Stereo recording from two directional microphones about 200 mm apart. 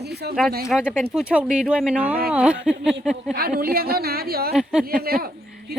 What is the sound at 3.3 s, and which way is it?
A woman's voice, 50° right (ahead or behind).